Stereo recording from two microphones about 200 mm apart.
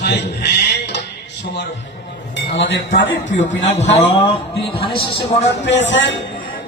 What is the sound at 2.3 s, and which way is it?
Speech, 65° left (ahead or behind).